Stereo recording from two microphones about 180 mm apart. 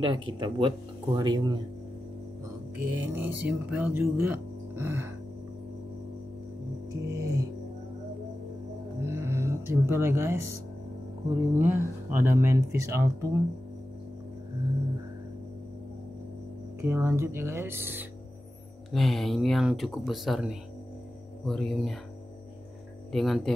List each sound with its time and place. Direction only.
0.0 s speech: 25° right (ahead or behind)
2.9 s speech: 10° right (ahead or behind)
6.9 s music: 20° right (ahead or behind)
9.0 s music: 15° right (ahead or behind)
11.5 s speech: 15° right (ahead or behind)
16.8 s speech: 15° right (ahead or behind)
18.9 s speech: centre (ahead or behind)
23.1 s speech: centre (ahead or behind)